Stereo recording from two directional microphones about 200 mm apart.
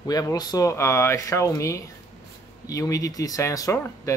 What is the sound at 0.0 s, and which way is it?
Speech, 20° left (ahead or behind).